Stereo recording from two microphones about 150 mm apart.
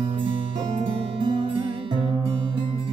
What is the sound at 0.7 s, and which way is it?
Music, 40° right (ahead or behind).